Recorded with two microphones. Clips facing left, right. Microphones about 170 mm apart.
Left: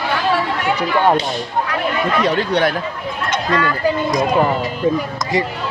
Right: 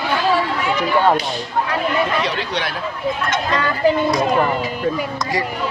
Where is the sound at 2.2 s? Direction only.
50° left (ahead or behind).